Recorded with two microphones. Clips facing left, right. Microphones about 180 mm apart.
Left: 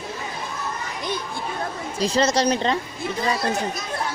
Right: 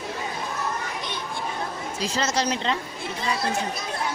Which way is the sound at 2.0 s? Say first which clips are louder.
Left 6 dB; 35° left (ahead or behind).